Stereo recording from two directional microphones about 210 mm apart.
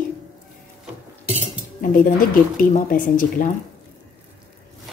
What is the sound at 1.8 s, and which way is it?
A woman's voice, 40° left (ahead or behind).